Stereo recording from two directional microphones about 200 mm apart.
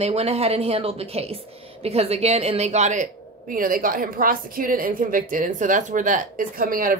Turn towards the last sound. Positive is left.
turn(degrees=-45)  # may be behind; listen again after turning